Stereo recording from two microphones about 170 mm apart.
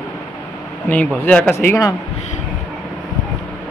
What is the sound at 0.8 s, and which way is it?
Speech, 10° left (ahead or behind).